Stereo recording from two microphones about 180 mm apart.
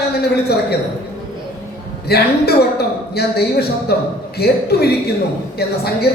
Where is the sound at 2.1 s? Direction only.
60° left (ahead or behind).